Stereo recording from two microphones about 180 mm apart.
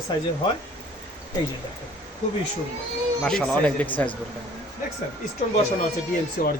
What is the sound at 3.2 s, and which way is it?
Speech, 5° left (ahead or behind).